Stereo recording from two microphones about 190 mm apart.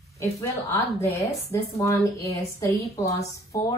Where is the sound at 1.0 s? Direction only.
15° left (ahead or behind).